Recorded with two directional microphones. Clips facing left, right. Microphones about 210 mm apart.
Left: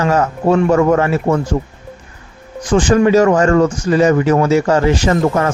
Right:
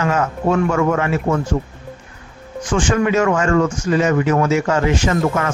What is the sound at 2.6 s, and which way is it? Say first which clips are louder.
A man's voice: left 6 dB; 35° left (ahead or behind).